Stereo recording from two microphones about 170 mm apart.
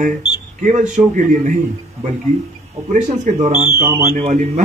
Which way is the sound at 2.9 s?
45° right (ahead or behind).